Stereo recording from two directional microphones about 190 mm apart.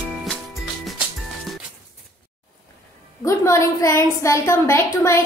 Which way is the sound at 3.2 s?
15° left (ahead or behind).